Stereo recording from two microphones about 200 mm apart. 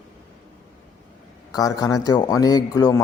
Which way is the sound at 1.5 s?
20° left (ahead or behind).